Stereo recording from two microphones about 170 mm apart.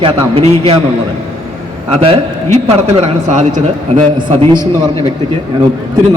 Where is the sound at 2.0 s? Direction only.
35° right (ahead or behind).